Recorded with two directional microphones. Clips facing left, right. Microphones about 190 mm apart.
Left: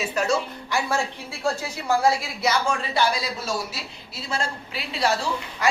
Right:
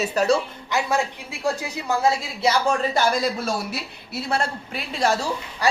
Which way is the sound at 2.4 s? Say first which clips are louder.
Right 4 dB; 40° right (ahead or behind).